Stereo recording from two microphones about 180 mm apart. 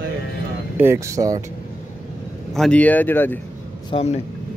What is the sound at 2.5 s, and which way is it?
Speech, 5° left (ahead or behind).